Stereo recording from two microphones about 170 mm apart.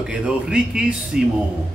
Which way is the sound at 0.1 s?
5° right (ahead or behind).